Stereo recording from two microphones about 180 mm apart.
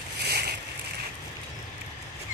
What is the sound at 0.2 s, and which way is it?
Boat, 65° right (ahead or behind).